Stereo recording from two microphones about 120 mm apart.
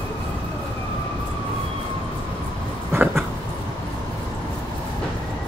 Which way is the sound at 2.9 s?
20° right (ahead or behind).